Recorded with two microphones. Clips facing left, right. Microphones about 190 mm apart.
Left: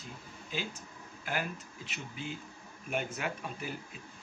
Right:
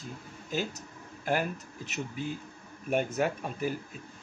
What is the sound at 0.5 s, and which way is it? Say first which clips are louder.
Speech: right 6 dB; 45° right (ahead or behind).